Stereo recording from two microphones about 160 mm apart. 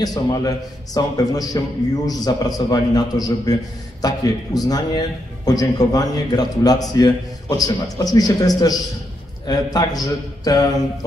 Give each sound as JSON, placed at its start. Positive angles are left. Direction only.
{"t": 0.0, "sound": "a man's voice", "side_deg": 25}